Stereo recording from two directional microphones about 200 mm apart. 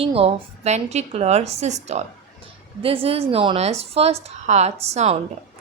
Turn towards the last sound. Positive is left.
turn(degrees=-30)  # may be behind; listen again after turning